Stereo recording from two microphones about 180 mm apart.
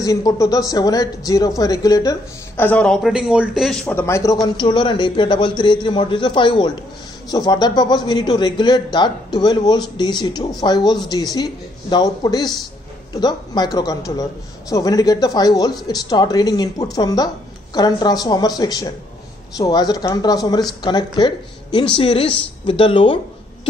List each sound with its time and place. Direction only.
0.0 s a man's voice: 20° left (ahead or behind); by 3.8 s centre (ahead or behind)
3.8 s a man's voice: 15° left (ahead or behind)